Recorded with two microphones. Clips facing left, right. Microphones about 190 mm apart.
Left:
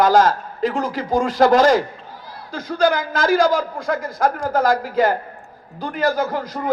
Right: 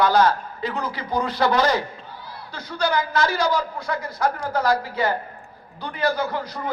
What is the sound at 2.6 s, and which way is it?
Speech, 90° left.